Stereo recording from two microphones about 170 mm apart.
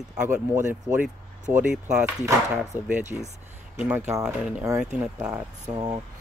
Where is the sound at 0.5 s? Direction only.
15° right (ahead or behind).